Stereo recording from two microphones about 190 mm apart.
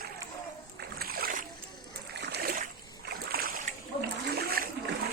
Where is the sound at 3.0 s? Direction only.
55° right (ahead or behind).